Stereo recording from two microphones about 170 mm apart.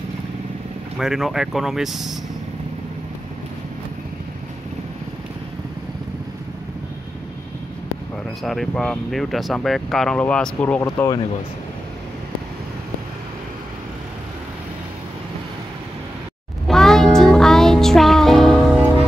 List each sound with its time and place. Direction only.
0.9 s speech: 5° right (ahead or behind)
8.5 s speech: 5° left (ahead or behind)
10.8 s speech: 15° left (ahead or behind)
16.6 s music: centre (ahead or behind)